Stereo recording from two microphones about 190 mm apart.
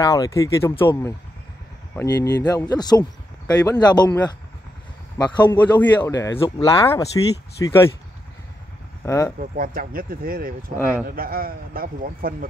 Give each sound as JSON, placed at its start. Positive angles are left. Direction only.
{"t": 0.0, "sound": "speech", "side_deg": 20}
{"t": 5.1, "sound": "speech", "side_deg": 25}
{"t": 5.6, "sound": "speech", "side_deg": 10}
{"t": 9.0, "sound": "speech", "side_deg": 15}
{"t": 9.4, "sound": "a man's voice", "side_deg": -50}